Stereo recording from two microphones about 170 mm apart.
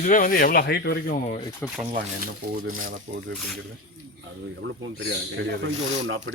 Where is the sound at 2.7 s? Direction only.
55° right (ahead or behind).